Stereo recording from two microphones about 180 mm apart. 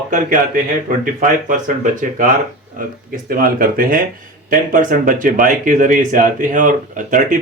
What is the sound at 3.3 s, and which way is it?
Speech, 55° right (ahead or behind).